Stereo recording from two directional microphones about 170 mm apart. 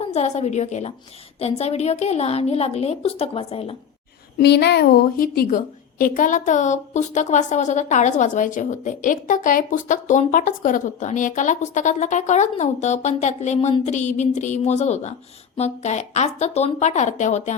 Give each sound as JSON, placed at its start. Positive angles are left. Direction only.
{"t": 0.0, "sound": "a woman's voice", "side_deg": 40}
{"t": 4.4, "sound": "a woman's voice", "side_deg": 80}